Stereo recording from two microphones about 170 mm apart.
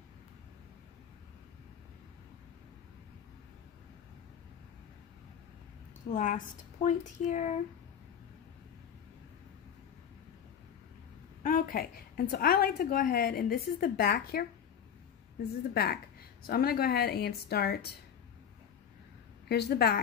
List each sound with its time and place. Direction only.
6.1 s a woman's voice: 50° left (ahead or behind)
11.4 s a woman's voice: 55° left (ahead or behind)
15.7 s a woman's voice: 65° left (ahead or behind)
19.5 s a woman's voice: 75° left (ahead or behind)